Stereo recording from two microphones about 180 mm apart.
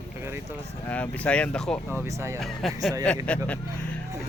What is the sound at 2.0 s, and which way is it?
Speech, 15° right (ahead or behind).